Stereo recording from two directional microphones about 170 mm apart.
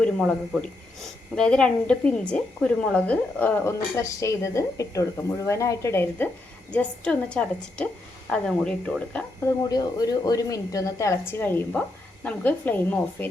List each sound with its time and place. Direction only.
1.4 s a woman's voice: 5° left (ahead or behind)
9.5 s a woman's voice: 20° left (ahead or behind)